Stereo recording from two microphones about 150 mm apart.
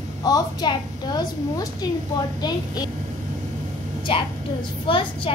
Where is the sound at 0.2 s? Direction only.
25° left (ahead or behind).